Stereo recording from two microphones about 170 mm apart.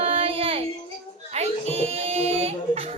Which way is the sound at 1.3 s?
40° right (ahead or behind).